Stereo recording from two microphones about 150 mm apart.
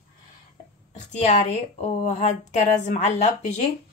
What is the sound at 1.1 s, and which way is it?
A woman's voice, 50° left (ahead or behind).